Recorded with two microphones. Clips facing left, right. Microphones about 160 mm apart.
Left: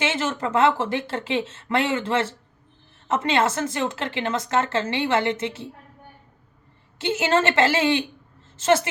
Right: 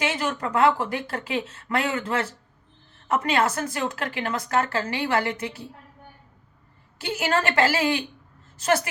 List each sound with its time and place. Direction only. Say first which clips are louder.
0.0 s a woman's voice: left 2 dB; 25° left (ahead or behind)
7.0 s a woman's voice: left 4 dB; 25° left (ahead or behind)